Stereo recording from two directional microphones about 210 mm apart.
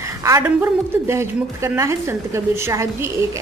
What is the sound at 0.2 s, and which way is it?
A woman's voice, 10° right (ahead or behind).